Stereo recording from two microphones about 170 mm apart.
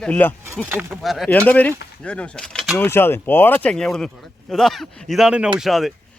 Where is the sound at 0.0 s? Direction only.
10° left (ahead or behind).